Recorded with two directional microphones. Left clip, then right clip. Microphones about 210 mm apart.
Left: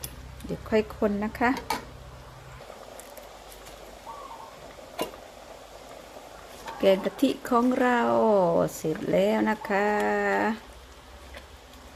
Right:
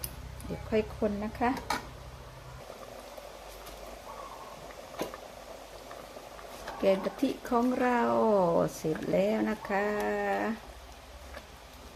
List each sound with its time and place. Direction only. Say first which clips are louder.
0.7 s speech: left 5 dB; 30° left (ahead or behind)
6.8 s speech: left 5 dB; 30° left (ahead or behind)